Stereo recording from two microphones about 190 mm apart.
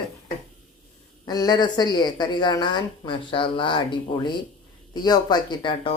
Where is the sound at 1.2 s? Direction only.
20° left (ahead or behind).